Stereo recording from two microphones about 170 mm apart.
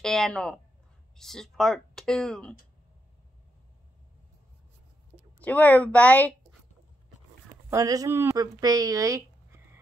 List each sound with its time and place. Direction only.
0.0 s speech: 5° left (ahead or behind)
5.4 s a woman's voice: 10° left (ahead or behind)
7.7 s speech: 20° right (ahead or behind)